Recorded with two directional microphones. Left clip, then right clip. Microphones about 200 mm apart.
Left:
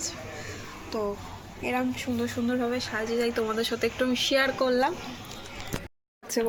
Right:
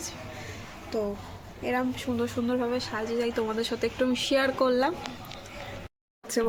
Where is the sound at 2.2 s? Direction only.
10° right (ahead or behind).